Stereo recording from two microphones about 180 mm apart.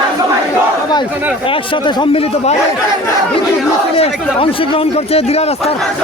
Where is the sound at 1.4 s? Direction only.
30° left (ahead or behind).